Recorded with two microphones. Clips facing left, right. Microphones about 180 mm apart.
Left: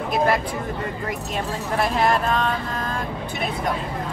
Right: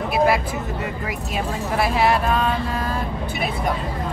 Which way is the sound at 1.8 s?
5° right (ahead or behind).